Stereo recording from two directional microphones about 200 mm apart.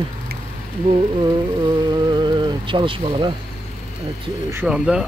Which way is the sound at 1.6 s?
20° right (ahead or behind).